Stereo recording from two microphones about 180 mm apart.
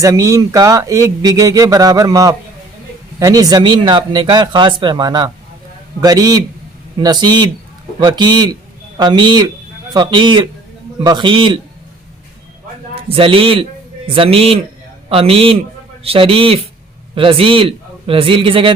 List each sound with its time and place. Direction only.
0.0 s speech: 20° right (ahead or behind)
13.1 s a man's voice: 30° right (ahead or behind)